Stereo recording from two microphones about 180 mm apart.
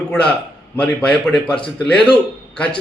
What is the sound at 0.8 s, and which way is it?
A man's voice, 5° left (ahead or behind).